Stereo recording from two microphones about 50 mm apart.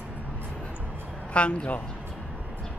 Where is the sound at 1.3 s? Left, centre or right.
Left.